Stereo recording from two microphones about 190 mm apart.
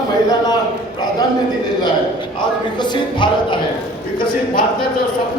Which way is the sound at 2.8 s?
25° left (ahead or behind).